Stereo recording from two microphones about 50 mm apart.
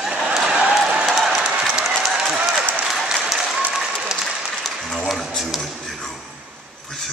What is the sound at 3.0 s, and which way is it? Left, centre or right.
Applause, centre.